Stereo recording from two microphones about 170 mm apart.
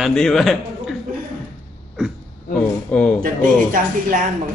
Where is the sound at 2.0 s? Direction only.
5° right (ahead or behind).